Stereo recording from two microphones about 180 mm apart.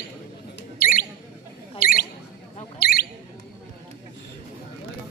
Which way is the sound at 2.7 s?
55° left (ahead or behind).